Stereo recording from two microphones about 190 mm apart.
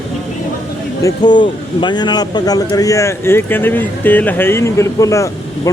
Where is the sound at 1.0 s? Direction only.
20° left (ahead or behind).